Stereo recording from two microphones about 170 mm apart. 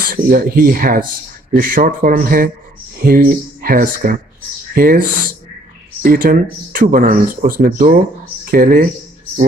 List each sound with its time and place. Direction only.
0.0 s speech: 55° right (ahead or behind)
6.0 s speech: 55° right (ahead or behind)